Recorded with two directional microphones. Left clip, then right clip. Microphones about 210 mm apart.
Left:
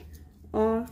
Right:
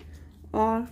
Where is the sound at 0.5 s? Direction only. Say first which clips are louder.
Right 1 dB; 15° right (ahead or behind).